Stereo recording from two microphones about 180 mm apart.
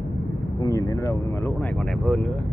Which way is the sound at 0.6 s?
20° left (ahead or behind).